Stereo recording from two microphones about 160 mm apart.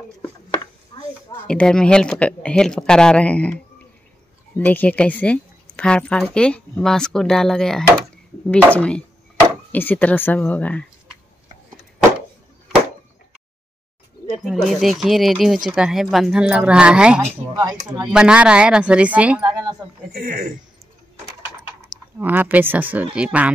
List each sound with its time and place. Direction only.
0.9 s a sound: 25° left (ahead or behind)
1.3 s a woman's voice: 5° left (ahead or behind)
14.4 s speech: centre (ahead or behind)
17.6 s speech: 25° right (ahead or behind)
18.1 s a woman's voice: 5° right (ahead or behind)
20.1 s speech: 80° right
22.2 s a woman's voice: 10° right (ahead or behind)